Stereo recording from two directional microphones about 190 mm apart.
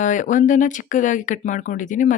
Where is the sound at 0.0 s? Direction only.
40° left (ahead or behind).